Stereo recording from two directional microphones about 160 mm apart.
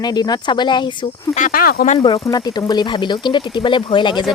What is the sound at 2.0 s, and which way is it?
Speech, 25° left (ahead or behind).